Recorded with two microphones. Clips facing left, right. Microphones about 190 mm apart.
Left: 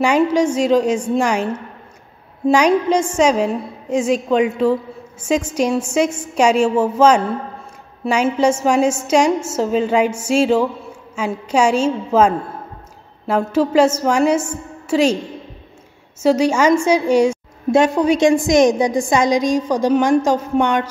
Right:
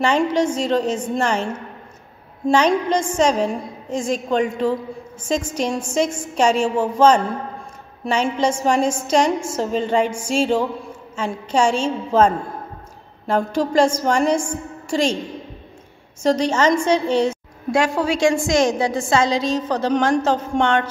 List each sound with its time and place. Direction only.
0.0 s a woman's voice: 10° left (ahead or behind)
16.2 s a woman's voice: 10° left (ahead or behind)
17.6 s a woman's voice: 20° left (ahead or behind)